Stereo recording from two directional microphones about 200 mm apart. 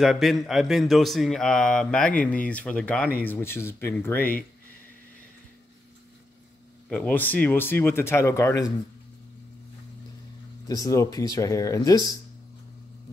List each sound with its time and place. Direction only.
0.0 s speech: centre (ahead or behind)
4.2 s speech: 45° left (ahead or behind)
6.9 s speech: 10° left (ahead or behind)
10.7 s speech: 15° left (ahead or behind)